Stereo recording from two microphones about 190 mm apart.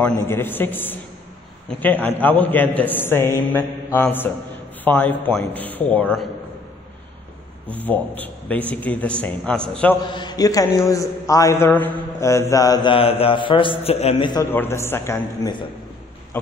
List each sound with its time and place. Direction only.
0.0 s a man's voice: 10° left (ahead or behind)
7.8 s a man's voice: 10° left (ahead or behind)
10.0 s a man's voice: 25° left (ahead or behind)
14.5 s a man's voice: 10° left (ahead or behind)